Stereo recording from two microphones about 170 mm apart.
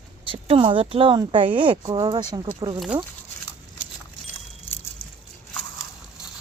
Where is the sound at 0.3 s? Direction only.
30° right (ahead or behind).